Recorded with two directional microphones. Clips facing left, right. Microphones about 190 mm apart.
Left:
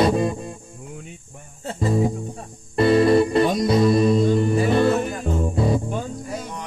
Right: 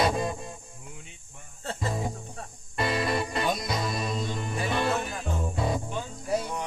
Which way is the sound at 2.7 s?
35° left (ahead or behind).